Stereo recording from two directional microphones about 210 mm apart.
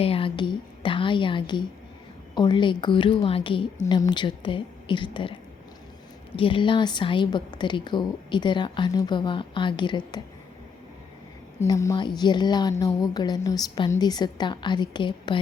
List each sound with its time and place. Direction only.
0.0 s a woman's voice: 25° left (ahead or behind)
6.3 s a woman's voice: 25° left (ahead or behind)
11.6 s a woman's voice: 15° left (ahead or behind)